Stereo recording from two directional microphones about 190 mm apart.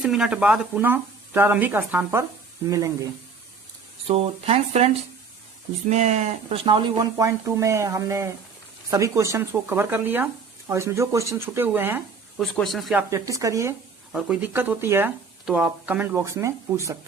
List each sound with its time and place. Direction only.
0.0 s speech: centre (ahead or behind)
4.0 s speech: 30° right (ahead or behind)
5.9 s speech: 35° right (ahead or behind); by 11.9 s 10° right (ahead or behind)
12.4 s speech: centre (ahead or behind)
13.1 s speech: 15° right (ahead or behind)
14.1 s speech: 5° right (ahead or behind)